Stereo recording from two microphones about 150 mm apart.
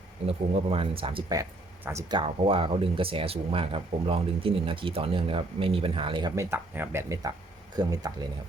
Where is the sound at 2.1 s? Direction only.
35° right (ahead or behind).